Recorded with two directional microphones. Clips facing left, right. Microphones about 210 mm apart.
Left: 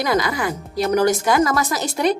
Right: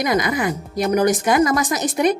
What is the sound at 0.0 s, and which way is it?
A woman's voice, 20° right (ahead or behind).